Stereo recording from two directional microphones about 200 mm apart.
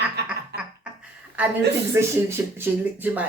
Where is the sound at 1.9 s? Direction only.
10° right (ahead or behind).